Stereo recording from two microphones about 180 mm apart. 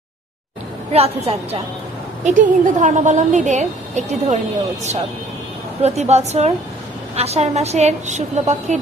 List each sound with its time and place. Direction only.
0.9 s a woman's voice: 35° right (ahead or behind)
5.8 s a woman's voice: 35° right (ahead or behind)